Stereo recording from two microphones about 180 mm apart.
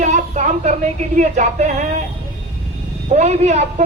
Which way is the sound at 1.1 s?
40° right (ahead or behind).